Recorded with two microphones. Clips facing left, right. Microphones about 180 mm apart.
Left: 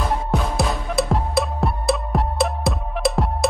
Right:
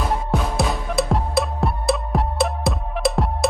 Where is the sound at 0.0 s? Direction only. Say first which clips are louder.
Even; centre (ahead or behind).